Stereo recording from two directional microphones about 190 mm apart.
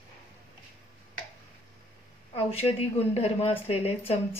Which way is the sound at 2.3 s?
30° left (ahead or behind).